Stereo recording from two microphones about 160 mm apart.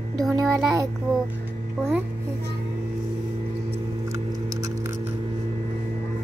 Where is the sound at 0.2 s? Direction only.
Centre (ahead or behind).